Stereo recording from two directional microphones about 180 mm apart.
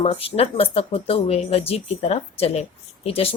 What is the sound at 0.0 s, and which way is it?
Speech, 30° left (ahead or behind).